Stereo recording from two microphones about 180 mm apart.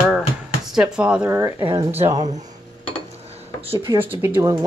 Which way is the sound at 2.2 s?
40° right (ahead or behind).